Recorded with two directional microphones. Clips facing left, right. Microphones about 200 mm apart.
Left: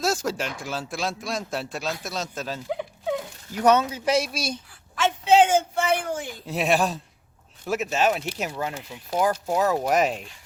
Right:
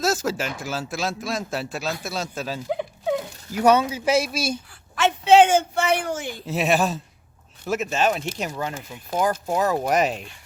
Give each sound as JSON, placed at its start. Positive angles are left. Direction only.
{"t": 0.0, "sound": "a man's voice", "side_deg": -5}
{"t": 4.9, "sound": "a sound", "side_deg": -75}
{"t": 6.5, "sound": "a man's voice", "side_deg": -5}